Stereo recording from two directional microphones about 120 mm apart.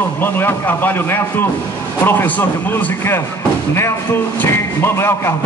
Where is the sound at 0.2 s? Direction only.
15° left (ahead or behind).